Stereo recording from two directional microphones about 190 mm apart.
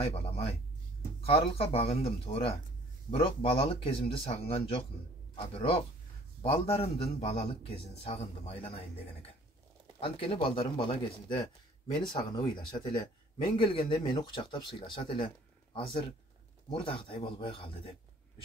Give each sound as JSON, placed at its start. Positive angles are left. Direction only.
{"t": 0.0, "sound": "a man's voice", "side_deg": 30}
{"t": 9.9, "sound": "a man's voice", "side_deg": 30}